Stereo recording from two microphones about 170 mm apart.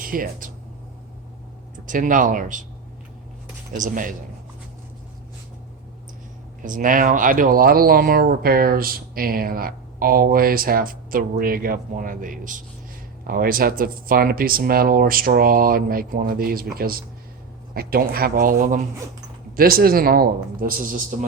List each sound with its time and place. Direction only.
0.0 s speech: 55° right (ahead or behind)
1.9 s speech: 50° right (ahead or behind)
3.7 s speech: 50° right (ahead or behind)
6.6 s speech: 50° right (ahead or behind)